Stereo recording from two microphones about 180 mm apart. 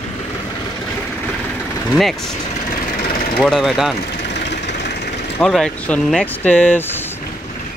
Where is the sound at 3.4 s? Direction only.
Centre (ahead or behind).